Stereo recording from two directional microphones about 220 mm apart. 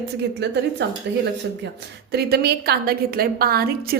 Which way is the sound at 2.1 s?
45° right (ahead or behind).